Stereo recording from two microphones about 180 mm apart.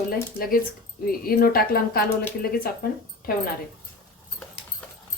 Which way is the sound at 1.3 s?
55° left (ahead or behind).